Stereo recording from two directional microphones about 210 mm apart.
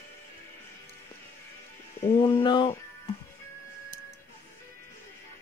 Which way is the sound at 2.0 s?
25° left (ahead or behind).